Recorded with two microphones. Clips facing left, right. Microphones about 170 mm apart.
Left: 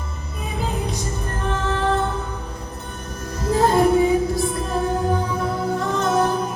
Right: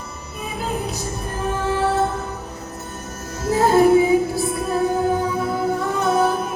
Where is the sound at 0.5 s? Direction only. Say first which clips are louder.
Even; 5° right (ahead or behind).